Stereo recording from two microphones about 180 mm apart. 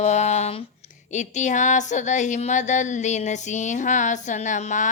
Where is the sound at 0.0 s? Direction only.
40° left (ahead or behind).